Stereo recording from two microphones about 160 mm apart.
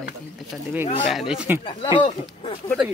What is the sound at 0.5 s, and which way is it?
Speech, 5° right (ahead or behind).